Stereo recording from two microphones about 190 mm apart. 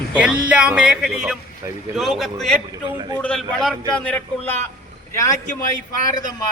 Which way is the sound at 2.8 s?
20° right (ahead or behind).